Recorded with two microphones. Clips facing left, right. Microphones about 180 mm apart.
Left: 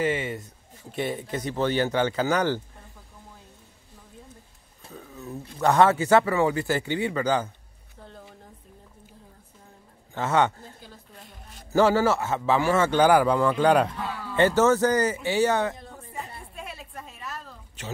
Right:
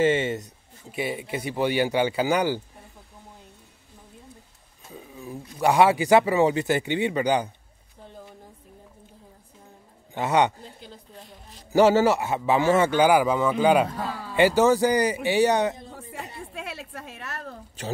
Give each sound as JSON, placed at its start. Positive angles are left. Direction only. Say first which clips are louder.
{"t": 0.0, "sound": "speech", "louder": "right 5 dB", "side_deg": -25}
{"t": 0.9, "sound": "speech", "louder": "even", "side_deg": -10}
{"t": 4.9, "sound": "a sound", "louder": "even", "side_deg": -10}
{"t": 5.6, "sound": "speech", "louder": "right 1 dB", "side_deg": -10}
{"t": 10.1, "sound": "a man's voice", "louder": "right 1 dB", "side_deg": -15}
{"t": 13.9, "sound": "speech", "louder": "right 2 dB", "side_deg": -35}
{"t": 14.3, "sound": "speech", "louder": "right 1 dB", "side_deg": -10}
{"t": 16.5, "sound": "a sound", "louder": "right 3 dB", "side_deg": -85}
{"t": 17.8, "sound": "speech", "louder": "right 5 dB", "side_deg": -35}